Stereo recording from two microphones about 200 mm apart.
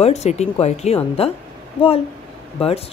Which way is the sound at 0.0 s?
35° left (ahead or behind).